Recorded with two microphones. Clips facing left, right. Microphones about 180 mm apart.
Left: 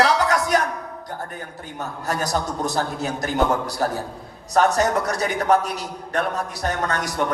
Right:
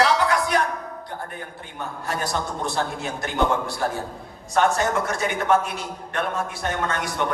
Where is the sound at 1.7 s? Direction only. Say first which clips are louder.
Left 3 dB; 40° left (ahead or behind).